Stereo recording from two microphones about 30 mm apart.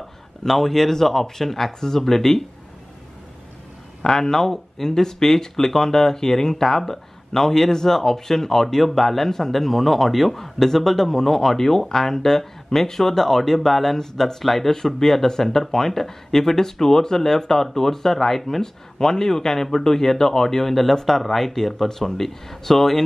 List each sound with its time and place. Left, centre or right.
0.5 s speech: centre
4.0 s speech: centre
14.4 s speech: centre
18.6 s speech: centre